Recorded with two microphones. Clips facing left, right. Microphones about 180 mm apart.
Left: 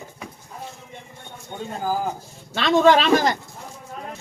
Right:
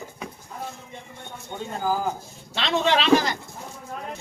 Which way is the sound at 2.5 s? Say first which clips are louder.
Left 7 dB; 50° left (ahead or behind).